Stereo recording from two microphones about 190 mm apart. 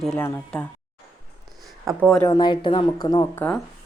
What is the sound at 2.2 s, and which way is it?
A woman's voice, 25° left (ahead or behind).